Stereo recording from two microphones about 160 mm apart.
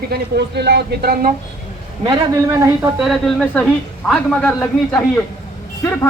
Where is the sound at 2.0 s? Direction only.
30° right (ahead or behind).